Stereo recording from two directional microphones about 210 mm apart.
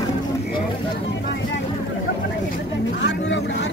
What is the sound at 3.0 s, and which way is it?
Speech, 55° left (ahead or behind).